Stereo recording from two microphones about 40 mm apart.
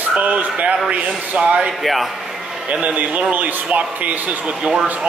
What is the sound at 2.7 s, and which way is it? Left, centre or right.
Speech, right.